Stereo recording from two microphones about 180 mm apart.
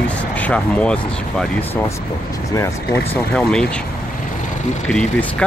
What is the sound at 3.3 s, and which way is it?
Speech, 5° left (ahead or behind).